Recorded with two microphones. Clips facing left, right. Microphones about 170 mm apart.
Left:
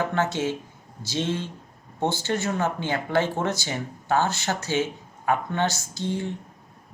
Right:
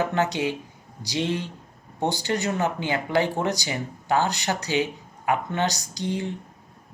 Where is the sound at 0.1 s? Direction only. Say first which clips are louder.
Right 1 dB; 15° right (ahead or behind).